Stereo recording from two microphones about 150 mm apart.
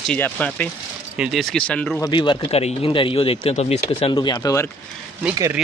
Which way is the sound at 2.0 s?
30° left (ahead or behind).